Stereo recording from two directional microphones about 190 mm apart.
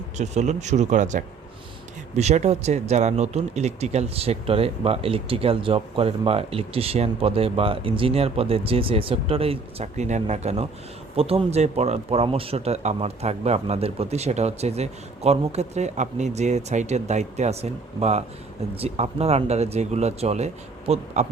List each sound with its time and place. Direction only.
0.2 s speech: 35° right (ahead or behind)